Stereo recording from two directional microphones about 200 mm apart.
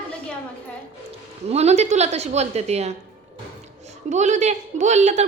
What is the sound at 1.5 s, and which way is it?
A woman's voice, 35° right (ahead or behind).